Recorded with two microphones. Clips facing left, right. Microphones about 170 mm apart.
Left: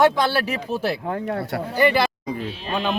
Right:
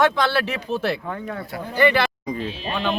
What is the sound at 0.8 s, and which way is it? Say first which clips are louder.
Speech: left 2 dB; 40° left (ahead or behind).